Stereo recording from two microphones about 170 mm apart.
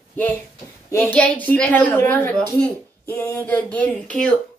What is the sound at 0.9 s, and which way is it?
A woman's voice, 10° left (ahead or behind).